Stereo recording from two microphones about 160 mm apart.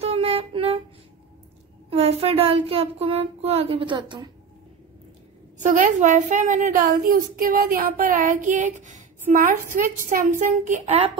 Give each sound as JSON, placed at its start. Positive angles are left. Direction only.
{"t": 0.0, "sound": "a sound", "side_deg": -40}
{"t": 1.9, "sound": "child singing", "side_deg": -40}
{"t": 5.6, "sound": "a woman's voice", "side_deg": -50}
{"t": 6.8, "sound": "child singing", "side_deg": -70}